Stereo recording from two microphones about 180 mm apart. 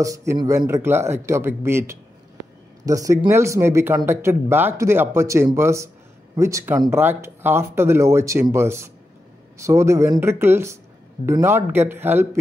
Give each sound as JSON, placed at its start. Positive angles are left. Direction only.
{"t": 0.0, "sound": "speech", "side_deg": -15}